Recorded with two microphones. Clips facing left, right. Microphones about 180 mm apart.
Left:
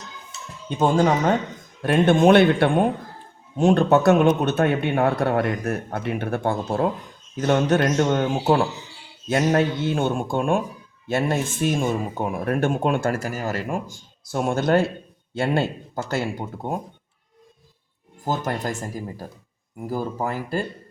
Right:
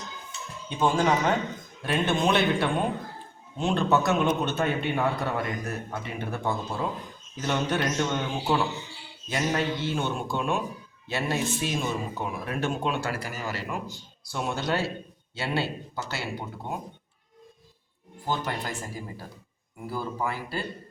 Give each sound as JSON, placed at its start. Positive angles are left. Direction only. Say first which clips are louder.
{"t": 1.9, "sound": "a man's voice", "louder": "left 9 dB", "side_deg": 55}
{"t": 3.6, "sound": "a man's voice", "louder": "left 8 dB", "side_deg": 50}
{"t": 18.2, "sound": "speech", "louder": "left 5 dB", "side_deg": 45}